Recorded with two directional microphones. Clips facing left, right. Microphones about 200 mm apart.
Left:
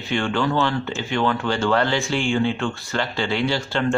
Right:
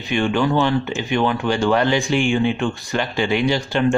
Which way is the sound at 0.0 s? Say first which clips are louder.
Right 3 dB; 15° right (ahead or behind).